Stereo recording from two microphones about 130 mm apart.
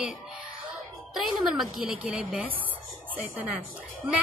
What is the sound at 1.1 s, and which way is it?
A woman's voice, 5° right (ahead or behind).